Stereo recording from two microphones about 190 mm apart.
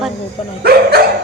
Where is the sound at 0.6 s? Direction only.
55° right (ahead or behind).